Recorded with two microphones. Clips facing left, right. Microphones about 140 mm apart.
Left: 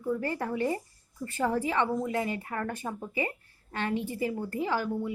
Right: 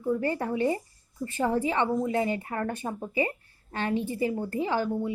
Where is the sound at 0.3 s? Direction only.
25° right (ahead or behind).